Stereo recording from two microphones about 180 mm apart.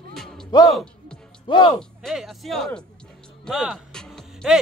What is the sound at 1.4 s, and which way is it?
Speech, 25° left (ahead or behind).